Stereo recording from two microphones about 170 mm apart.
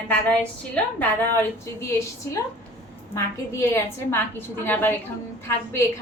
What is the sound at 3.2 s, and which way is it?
A woman's voice, 15° left (ahead or behind).